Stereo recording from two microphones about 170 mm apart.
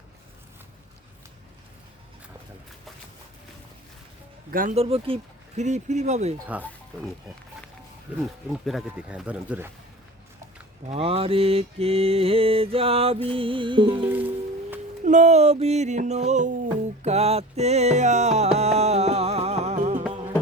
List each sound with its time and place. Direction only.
4.7 s mantra: 35° right (ahead or behind)
6.5 s speech: 10° right (ahead or behind)
8.1 s speech: 10° right (ahead or behind)
10.8 s mantra: 35° right (ahead or behind)
14.0 s music: 10° right (ahead or behind)
15.0 s mantra: 45° right (ahead or behind)
17.0 s music: 40° right (ahead or behind)